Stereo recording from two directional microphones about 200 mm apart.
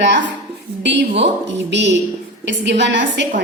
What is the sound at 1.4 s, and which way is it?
A woman's voice, 60° right (ahead or behind).